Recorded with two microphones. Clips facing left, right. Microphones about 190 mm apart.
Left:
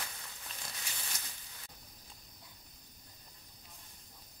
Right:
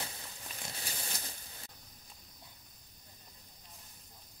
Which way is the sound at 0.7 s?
35° right (ahead or behind).